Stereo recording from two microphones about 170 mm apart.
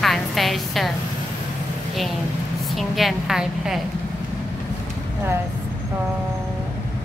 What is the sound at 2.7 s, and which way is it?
A woman's voice, centre (ahead or behind).